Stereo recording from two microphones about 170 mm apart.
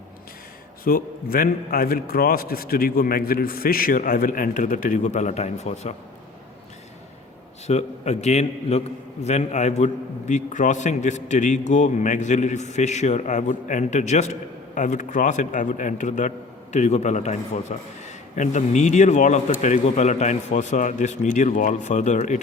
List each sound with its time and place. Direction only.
0.9 s a man's voice: 60° left (ahead or behind); by 5.9 s 40° left (ahead or behind)
7.7 s a man's voice: 40° left (ahead or behind)